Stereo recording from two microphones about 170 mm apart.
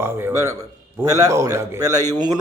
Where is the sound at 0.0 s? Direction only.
15° right (ahead or behind).